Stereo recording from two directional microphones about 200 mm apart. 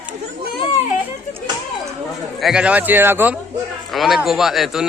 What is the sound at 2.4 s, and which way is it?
A man's voice, 5° right (ahead or behind).